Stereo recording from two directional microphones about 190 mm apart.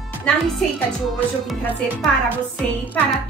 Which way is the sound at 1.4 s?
Centre (ahead or behind).